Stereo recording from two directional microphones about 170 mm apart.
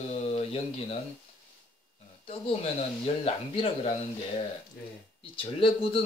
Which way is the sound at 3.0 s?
35° left (ahead or behind).